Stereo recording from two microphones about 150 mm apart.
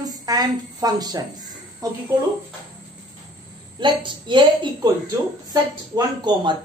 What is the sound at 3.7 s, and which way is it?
A woman's voice, 30° right (ahead or behind).